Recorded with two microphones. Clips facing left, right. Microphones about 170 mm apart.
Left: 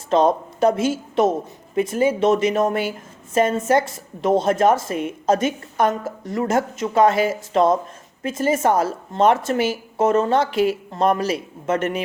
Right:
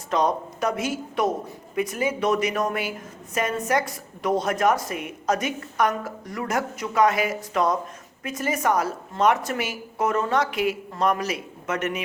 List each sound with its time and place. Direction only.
0.1 s a woman's voice: 25° left (ahead or behind)